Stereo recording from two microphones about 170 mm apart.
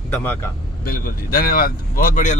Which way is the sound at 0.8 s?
60° left (ahead or behind).